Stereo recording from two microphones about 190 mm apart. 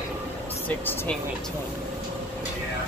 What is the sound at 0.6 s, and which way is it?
Speech, 10° left (ahead or behind).